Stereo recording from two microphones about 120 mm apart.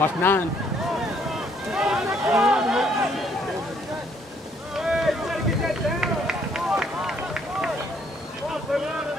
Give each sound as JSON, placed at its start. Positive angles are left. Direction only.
{"t": 0.0, "sound": "speech", "side_deg": 15}
{"t": 1.7, "sound": "a sound", "side_deg": -5}
{"t": 4.7, "sound": "run", "side_deg": -5}